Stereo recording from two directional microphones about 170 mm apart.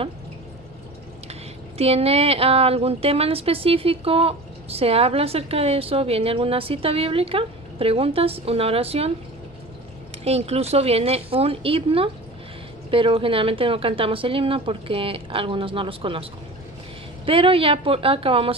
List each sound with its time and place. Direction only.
1.8 s a woman's voice: 35° right (ahead or behind)
10.2 s a woman's voice: 35° right (ahead or behind)
17.3 s a woman's voice: 30° right (ahead or behind)